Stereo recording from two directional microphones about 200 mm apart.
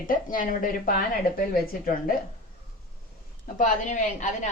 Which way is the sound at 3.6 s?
40° left (ahead or behind).